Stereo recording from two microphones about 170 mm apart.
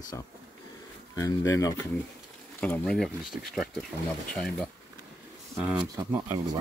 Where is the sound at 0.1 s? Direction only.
15° left (ahead or behind).